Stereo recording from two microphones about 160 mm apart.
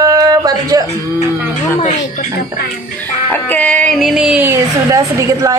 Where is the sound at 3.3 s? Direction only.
10° left (ahead or behind).